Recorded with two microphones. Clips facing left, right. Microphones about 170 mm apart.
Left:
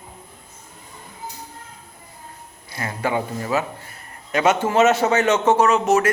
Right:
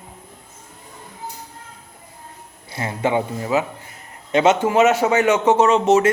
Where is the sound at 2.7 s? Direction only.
20° right (ahead or behind).